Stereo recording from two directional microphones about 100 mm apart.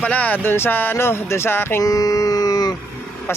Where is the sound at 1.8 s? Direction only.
35° left (ahead or behind).